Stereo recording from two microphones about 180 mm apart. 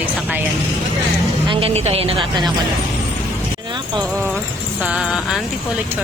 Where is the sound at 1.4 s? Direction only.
35° right (ahead or behind).